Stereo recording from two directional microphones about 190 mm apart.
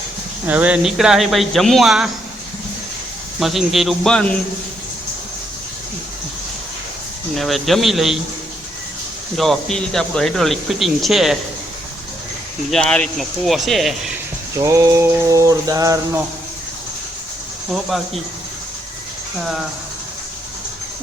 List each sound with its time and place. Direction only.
0.4 s speech: 5° right (ahead or behind)
3.4 s speech: centre (ahead or behind)
7.3 s speech: centre (ahead or behind)
9.4 s speech: centre (ahead or behind)
12.7 s speech: 5° left (ahead or behind)
14.6 s a sound: 15° right (ahead or behind)
17.7 s speech: centre (ahead or behind)
19.4 s speech: centre (ahead or behind)